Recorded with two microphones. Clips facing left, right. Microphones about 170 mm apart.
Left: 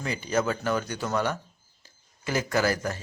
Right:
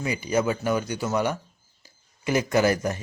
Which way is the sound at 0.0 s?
10° right (ahead or behind).